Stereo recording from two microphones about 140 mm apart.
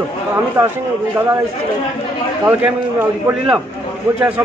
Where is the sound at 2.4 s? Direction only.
10° right (ahead or behind).